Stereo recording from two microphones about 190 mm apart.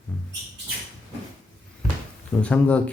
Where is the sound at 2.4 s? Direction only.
5° left (ahead or behind).